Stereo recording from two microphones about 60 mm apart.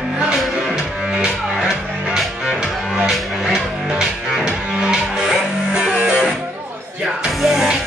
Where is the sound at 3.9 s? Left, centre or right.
Centre.